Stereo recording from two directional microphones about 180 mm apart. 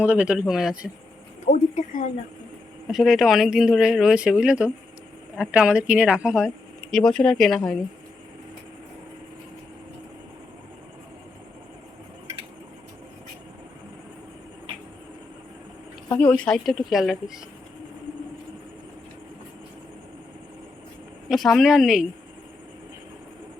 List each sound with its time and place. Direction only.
0.0 s speech: 10° right (ahead or behind)
1.5 s a woman's voice: 45° left (ahead or behind)
2.9 s speech: centre (ahead or behind)
16.1 s speech: 5° left (ahead or behind)
21.2 s speech: centre (ahead or behind)